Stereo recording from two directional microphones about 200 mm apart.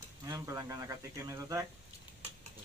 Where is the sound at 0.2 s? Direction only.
15° right (ahead or behind).